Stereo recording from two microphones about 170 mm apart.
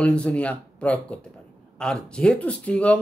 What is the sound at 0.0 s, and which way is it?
Speech, 5° left (ahead or behind).